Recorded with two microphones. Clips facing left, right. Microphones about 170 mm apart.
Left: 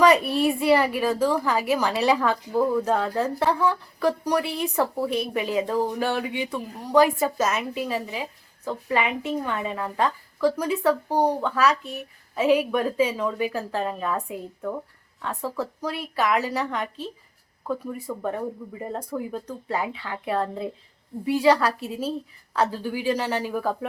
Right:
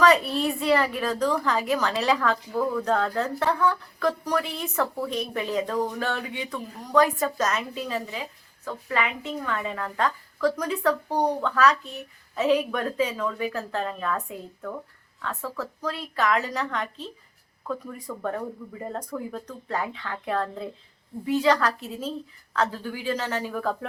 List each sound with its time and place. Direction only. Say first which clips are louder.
0.0 s a woman's voice: left 2 dB; 10° left (ahead or behind)
10.6 s speech: left 2 dB; 10° left (ahead or behind)